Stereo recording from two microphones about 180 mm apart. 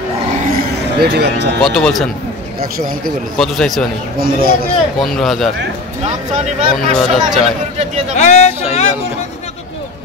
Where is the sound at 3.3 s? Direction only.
Centre (ahead or behind).